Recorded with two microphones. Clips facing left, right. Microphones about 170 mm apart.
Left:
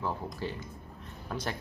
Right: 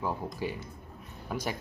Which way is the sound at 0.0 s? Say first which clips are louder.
Right 2 dB; 10° right (ahead or behind).